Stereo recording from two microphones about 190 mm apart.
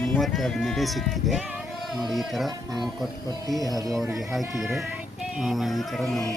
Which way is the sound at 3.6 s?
20° right (ahead or behind).